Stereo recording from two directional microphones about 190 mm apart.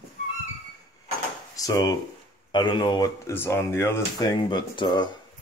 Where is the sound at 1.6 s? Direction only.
20° left (ahead or behind).